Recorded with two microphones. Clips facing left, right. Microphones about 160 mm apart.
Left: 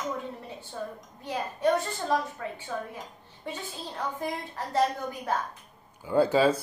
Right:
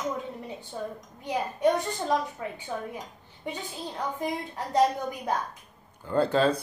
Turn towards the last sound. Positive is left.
turn(degrees=5)  # may be behind; listen again after turning